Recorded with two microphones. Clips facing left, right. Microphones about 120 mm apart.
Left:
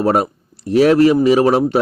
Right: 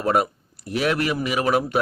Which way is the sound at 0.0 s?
30° left (ahead or behind).